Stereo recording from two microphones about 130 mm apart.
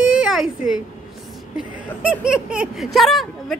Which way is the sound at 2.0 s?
5° right (ahead or behind).